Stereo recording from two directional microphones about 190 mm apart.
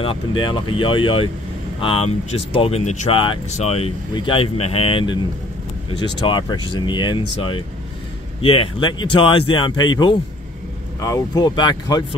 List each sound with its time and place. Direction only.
0.4 s speech: 25° left (ahead or behind)